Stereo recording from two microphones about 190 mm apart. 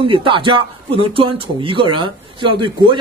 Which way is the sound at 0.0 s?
25° right (ahead or behind).